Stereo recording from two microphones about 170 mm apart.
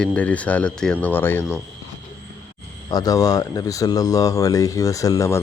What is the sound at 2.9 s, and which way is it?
Speech, 20° left (ahead or behind).